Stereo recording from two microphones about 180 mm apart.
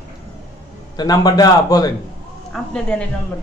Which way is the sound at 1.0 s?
20° left (ahead or behind).